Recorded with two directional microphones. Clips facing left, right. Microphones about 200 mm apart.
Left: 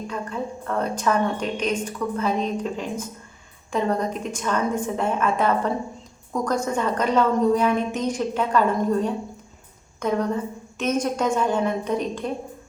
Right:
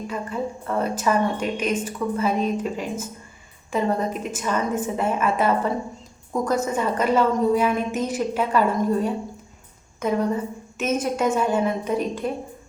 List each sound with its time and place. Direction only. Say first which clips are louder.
0.1 s a woman's voice: right 3 dB; 5° right (ahead or behind)